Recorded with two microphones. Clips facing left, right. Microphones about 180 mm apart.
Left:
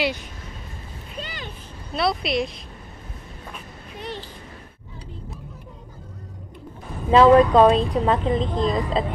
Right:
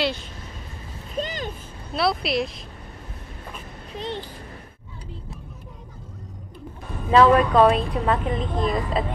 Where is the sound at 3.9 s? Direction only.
20° right (ahead or behind).